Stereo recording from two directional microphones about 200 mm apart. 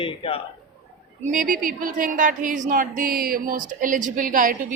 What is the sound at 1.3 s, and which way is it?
A woman's voice, 45° right (ahead or behind).